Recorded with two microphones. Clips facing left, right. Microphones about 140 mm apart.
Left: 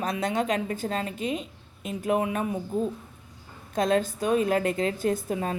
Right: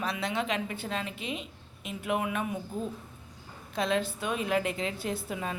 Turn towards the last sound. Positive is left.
turn(degrees=40)  # may be behind; listen again after turning